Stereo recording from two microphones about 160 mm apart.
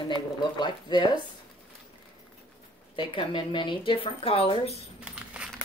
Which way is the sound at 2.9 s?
30° left (ahead or behind).